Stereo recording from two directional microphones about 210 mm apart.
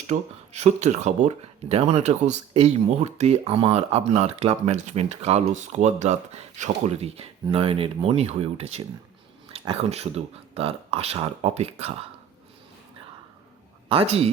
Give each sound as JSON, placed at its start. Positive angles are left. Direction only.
{"t": 0.1, "sound": "speech", "side_deg": -35}
{"t": 13.9, "sound": "speech", "side_deg": -30}